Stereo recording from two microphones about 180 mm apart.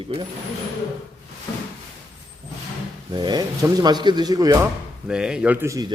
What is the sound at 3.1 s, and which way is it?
Speech, 25° right (ahead or behind).